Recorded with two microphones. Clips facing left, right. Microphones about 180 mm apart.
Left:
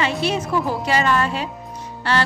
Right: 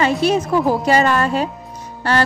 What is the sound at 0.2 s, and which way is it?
A woman's voice, 45° right (ahead or behind).